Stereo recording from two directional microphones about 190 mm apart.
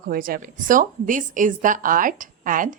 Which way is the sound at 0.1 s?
50° right (ahead or behind).